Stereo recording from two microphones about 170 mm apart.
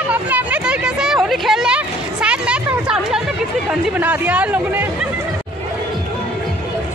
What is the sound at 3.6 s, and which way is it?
Chatter, 5° right (ahead or behind).